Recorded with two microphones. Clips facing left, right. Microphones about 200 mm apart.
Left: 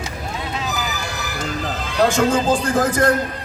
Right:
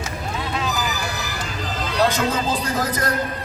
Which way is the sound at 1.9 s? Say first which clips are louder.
Left 4 dB; 50° left (ahead or behind).